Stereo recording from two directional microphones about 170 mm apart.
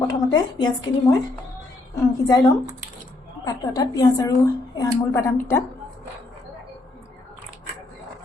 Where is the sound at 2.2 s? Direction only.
25° left (ahead or behind).